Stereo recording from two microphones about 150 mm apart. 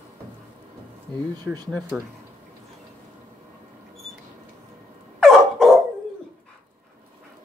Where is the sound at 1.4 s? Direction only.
25° right (ahead or behind).